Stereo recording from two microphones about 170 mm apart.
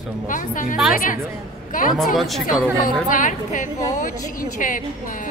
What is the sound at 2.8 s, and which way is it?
A woman's voice, 50° left (ahead or behind).